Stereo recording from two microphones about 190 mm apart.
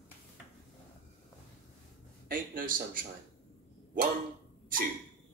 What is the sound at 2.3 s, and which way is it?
Speech, 45° right (ahead or behind).